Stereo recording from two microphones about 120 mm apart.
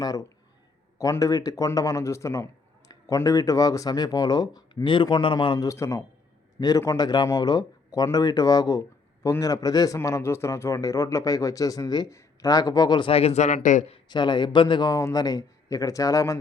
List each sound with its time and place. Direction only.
0.0 s a man's voice: 30° left (ahead or behind)
5.6 s a man's voice: 25° left (ahead or behind)
13.1 s speech: 60° left (ahead or behind); by 13.9 s 90° left
14.1 s a man's voice: 40° left (ahead or behind)